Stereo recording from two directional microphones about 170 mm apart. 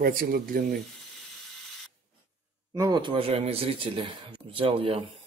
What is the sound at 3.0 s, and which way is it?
Speech, 30° right (ahead or behind).